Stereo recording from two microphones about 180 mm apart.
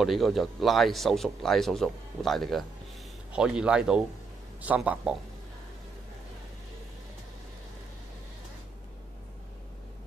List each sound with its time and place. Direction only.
0.0 s speech: centre (ahead or behind)